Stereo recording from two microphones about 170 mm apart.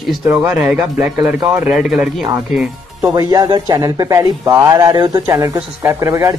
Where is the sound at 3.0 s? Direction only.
20° right (ahead or behind).